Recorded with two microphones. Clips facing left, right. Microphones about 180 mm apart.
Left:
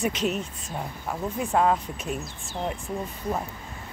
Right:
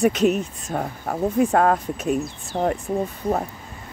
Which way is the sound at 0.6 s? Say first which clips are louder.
Right 6 dB; 55° right (ahead or behind).